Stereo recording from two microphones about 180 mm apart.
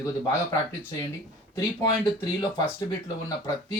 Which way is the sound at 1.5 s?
20° left (ahead or behind).